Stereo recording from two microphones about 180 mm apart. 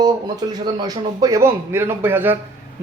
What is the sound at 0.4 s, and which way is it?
Speech, 25° right (ahead or behind).